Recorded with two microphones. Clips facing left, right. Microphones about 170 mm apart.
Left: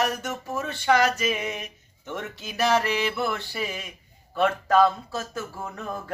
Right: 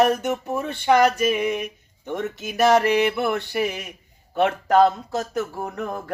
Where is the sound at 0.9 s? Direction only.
55° right (ahead or behind).